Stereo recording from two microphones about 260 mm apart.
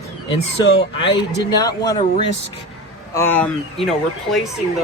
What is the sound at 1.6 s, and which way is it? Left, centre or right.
Speech, centre.